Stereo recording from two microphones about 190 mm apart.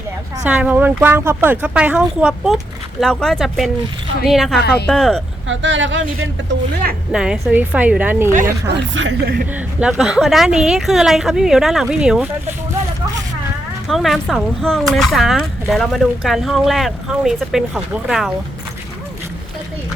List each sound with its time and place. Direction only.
0.4 s speech: 5° right (ahead or behind)
5.5 s speech: 80° right
7.1 s speech: 5° right (ahead or behind)
8.7 s speech: 70° right (ahead or behind)
9.5 s speech: 5° right (ahead or behind)
13.8 s speech: centre (ahead or behind)